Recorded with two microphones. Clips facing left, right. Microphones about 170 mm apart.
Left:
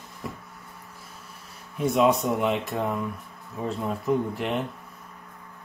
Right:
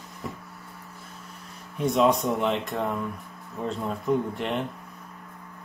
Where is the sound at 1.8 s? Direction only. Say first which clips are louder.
Even; centre (ahead or behind).